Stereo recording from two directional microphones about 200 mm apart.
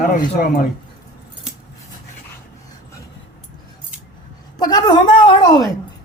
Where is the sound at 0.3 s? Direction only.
45° left (ahead or behind).